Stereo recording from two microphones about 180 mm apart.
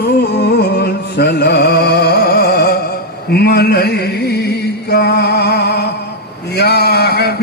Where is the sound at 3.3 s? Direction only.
65° left (ahead or behind).